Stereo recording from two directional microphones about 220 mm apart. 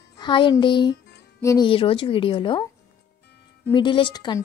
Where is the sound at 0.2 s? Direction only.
20° left (ahead or behind).